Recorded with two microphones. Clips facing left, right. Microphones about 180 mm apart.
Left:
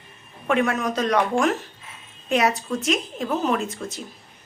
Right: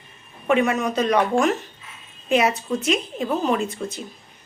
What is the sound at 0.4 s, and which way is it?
Speech, centre (ahead or behind).